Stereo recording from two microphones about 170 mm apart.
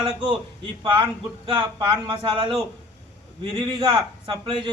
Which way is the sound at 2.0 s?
30° right (ahead or behind).